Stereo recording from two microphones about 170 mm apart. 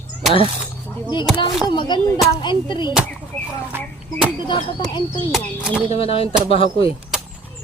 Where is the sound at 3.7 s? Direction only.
10° right (ahead or behind).